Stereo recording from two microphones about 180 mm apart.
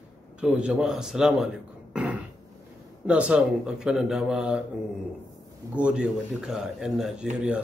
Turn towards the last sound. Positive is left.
turn(degrees=-5)  # may be behind; listen again after turning